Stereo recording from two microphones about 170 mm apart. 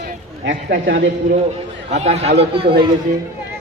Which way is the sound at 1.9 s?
40° right (ahead or behind).